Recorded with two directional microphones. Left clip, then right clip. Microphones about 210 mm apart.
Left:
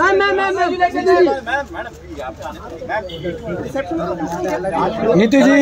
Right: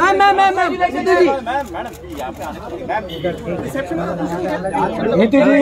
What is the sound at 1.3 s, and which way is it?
Speech, 30° left (ahead or behind).